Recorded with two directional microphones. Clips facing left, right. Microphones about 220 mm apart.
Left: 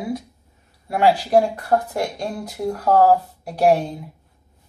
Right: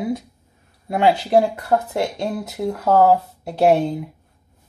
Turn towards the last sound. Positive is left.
turn(degrees=-25)  # may be behind; listen again after turning